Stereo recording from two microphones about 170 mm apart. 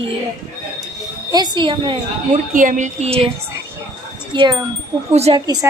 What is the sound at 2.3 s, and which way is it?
Speech, 50° right (ahead or behind).